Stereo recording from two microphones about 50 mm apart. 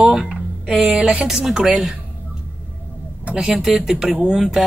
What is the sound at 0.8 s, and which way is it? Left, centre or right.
Speech, right.